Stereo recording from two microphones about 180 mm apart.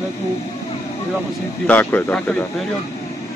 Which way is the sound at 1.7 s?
10° left (ahead or behind).